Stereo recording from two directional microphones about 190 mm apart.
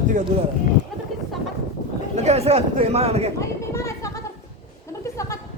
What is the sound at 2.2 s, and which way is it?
A man's voice, 35° right (ahead or behind).